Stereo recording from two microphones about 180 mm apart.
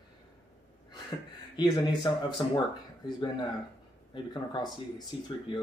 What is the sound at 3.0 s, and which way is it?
Speech, 25° left (ahead or behind).